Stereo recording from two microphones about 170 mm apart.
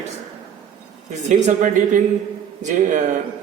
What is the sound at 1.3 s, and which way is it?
A man's voice, 45° right (ahead or behind).